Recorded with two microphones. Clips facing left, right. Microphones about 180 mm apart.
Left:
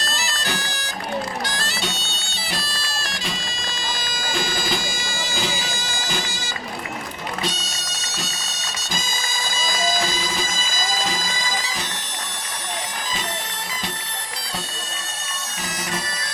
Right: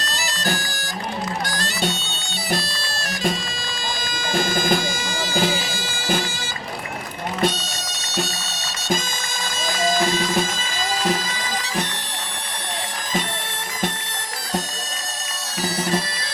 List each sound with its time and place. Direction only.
4.3 s bagpipes: 50° right (ahead or behind)
7.4 s bagpipes: 60° right (ahead or behind)
9.6 s music: 60° right (ahead or behind)